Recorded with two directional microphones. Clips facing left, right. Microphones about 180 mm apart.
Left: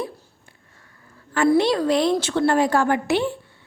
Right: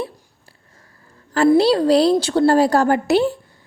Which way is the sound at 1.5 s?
30° right (ahead or behind).